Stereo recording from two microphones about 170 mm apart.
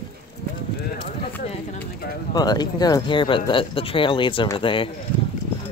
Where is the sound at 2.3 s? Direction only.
25° left (ahead or behind).